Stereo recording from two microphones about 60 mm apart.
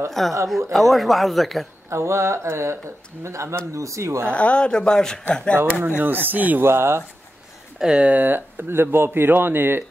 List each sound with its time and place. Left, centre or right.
0.2 s a man's voice: centre
1.9 s speech: right
4.3 s speech: left
5.7 s speech: right
6.6 s speech: right
7.8 s speech: centre
8.1 s speech: right